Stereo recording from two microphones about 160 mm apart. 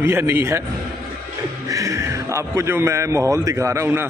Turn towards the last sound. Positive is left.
turn(degrees=-15)  # may be behind; listen again after turning